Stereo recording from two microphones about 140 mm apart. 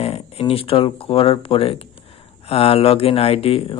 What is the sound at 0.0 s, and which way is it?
Speech, 45° left (ahead or behind).